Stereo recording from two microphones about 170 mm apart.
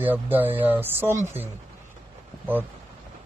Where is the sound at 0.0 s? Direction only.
10° right (ahead or behind).